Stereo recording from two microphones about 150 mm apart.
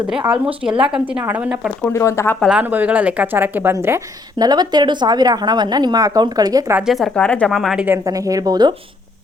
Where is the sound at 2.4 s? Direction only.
5° right (ahead or behind); by 6.7 s 25° right (ahead or behind).